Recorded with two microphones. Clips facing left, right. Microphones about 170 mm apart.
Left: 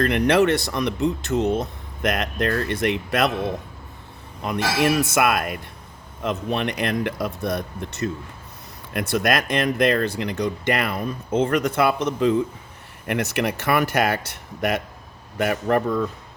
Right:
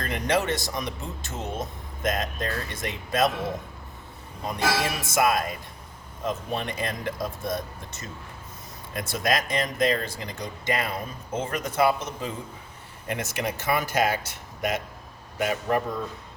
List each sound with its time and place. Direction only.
0.0 s speech: 70° left (ahead or behind)
4.4 s speech: 70° left (ahead or behind)